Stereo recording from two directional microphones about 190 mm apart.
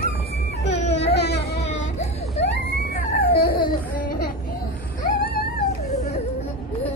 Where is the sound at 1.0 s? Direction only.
60° left (ahead or behind).